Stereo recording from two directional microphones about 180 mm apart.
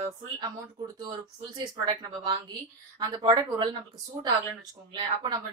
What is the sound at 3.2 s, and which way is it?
Speech, 25° right (ahead or behind).